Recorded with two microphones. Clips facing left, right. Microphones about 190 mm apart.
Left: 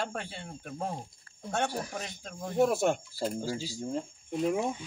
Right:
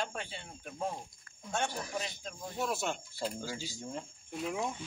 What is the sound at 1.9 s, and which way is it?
Speech, 60° left (ahead or behind).